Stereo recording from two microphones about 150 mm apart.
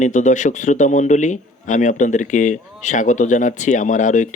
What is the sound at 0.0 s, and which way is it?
A man's voice, 55° left (ahead or behind).